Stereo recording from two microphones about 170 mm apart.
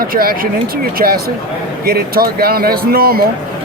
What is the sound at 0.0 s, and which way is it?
Speech, 60° right (ahead or behind).